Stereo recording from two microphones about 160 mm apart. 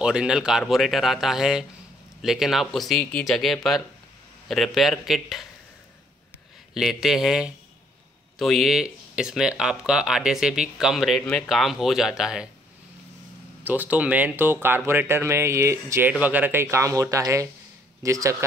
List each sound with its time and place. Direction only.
0.0 s speech: 5° right (ahead or behind)
6.7 s speech: centre (ahead or behind)
13.7 s speech: 10° right (ahead or behind)